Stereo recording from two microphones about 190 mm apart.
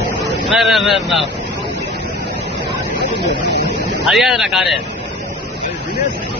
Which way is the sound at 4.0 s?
Centre (ahead or behind).